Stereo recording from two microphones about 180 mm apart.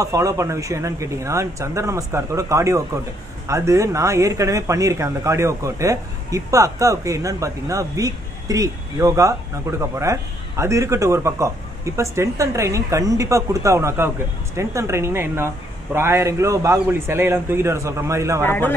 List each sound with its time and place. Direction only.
0.0 s speech: 20° right (ahead or behind)
18.4 s a man's voice: 10° left (ahead or behind)